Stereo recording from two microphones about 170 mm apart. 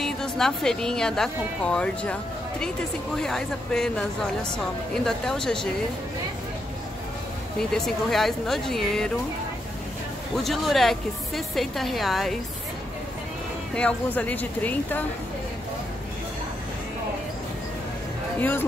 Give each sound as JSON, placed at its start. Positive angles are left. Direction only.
{"t": 0.0, "sound": "speech", "side_deg": 5}
{"t": 3.2, "sound": "speech", "side_deg": 5}
{"t": 7.5, "sound": "speech", "side_deg": 0}
{"t": 10.3, "sound": "speech", "side_deg": 0}
{"t": 13.7, "sound": "speech", "side_deg": 10}
{"t": 18.4, "sound": "speech", "side_deg": 10}